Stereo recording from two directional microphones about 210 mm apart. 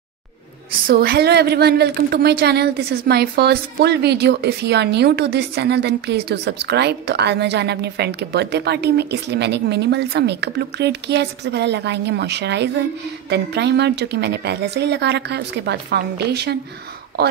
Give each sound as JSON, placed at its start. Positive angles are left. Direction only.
{"t": 0.8, "sound": "a woman's voice", "side_deg": -45}